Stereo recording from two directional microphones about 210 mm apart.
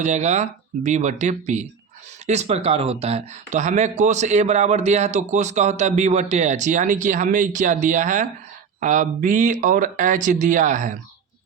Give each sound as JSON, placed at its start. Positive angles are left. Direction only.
{"t": 0.0, "sound": "speech", "side_deg": -35}